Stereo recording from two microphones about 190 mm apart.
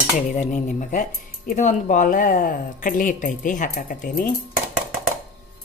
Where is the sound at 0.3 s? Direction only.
40° left (ahead or behind).